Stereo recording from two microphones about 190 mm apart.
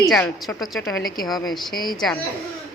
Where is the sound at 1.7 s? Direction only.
20° left (ahead or behind).